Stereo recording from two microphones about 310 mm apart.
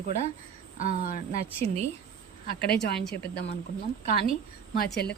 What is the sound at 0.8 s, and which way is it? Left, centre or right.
Speech, left.